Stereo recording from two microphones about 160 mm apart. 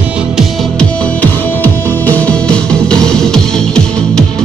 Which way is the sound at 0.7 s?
10° left (ahead or behind).